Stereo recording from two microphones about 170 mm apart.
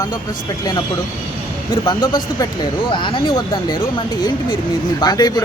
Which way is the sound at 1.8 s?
25° left (ahead or behind).